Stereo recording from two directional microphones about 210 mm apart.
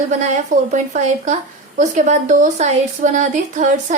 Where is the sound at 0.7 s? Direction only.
35° right (ahead or behind).